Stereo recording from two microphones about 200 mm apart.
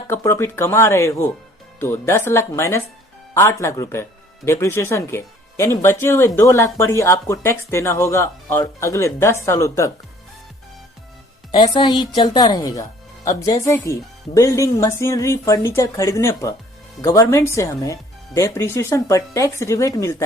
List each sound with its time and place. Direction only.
0.1 s speech: 15° left (ahead or behind)
11.5 s speech: 25° left (ahead or behind)